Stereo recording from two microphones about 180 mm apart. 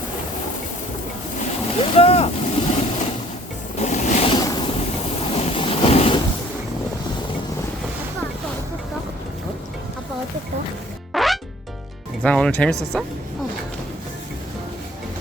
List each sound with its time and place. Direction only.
1.8 s boat: 35° left (ahead or behind)
3.8 s music: 40° left (ahead or behind)
4.3 s boat: 20° left (ahead or behind)
11.1 s music: centre (ahead or behind)
12.2 s speech: 5° left (ahead or behind)